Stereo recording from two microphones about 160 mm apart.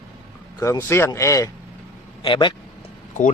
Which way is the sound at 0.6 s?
15° left (ahead or behind).